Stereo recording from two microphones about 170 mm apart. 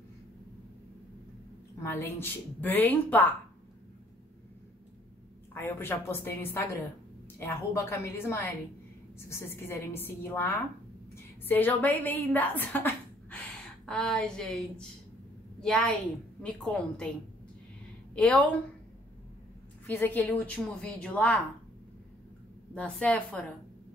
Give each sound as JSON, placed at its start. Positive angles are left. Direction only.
{"t": 1.8, "sound": "speech", "side_deg": 15}
{"t": 5.5, "sound": "a woman's voice", "side_deg": 15}
{"t": 18.1, "sound": "a woman's voice", "side_deg": 5}
{"t": 19.9, "sound": "speech", "side_deg": 10}
{"t": 22.8, "sound": "speech", "side_deg": 10}